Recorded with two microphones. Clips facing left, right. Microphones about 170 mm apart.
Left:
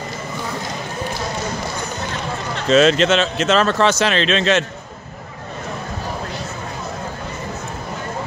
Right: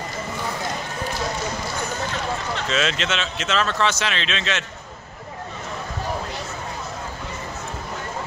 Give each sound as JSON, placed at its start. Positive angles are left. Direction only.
{"t": 2.7, "sound": "speech", "side_deg": 40}